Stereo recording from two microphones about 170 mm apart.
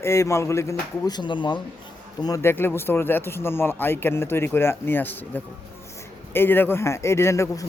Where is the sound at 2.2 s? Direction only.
15° left (ahead or behind).